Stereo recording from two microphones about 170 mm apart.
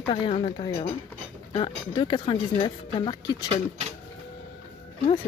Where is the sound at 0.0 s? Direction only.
30° left (ahead or behind).